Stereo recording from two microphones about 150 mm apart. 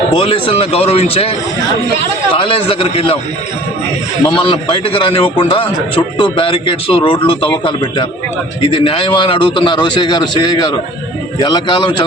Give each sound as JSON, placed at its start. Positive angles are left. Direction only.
{"t": 0.2, "sound": "a man's voice", "side_deg": 35}
{"t": 2.3, "sound": "a man's voice", "side_deg": 35}
{"t": 4.3, "sound": "a man's voice", "side_deg": 35}